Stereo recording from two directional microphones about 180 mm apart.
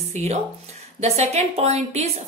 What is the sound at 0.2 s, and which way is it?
A woman's voice, 40° right (ahead or behind).